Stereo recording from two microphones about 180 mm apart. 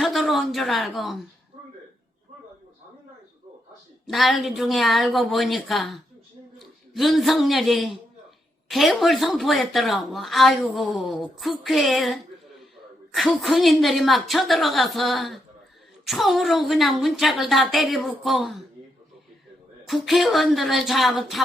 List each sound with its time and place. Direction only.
0.0 s a woman's voice: centre (ahead or behind)
4.0 s a man's voice: centre (ahead or behind)
19.9 s speech: centre (ahead or behind)